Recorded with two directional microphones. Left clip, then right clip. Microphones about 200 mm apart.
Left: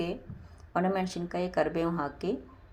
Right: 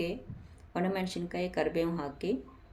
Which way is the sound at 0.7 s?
Centre (ahead or behind).